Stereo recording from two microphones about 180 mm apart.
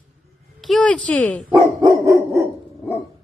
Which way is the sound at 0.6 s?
Centre (ahead or behind).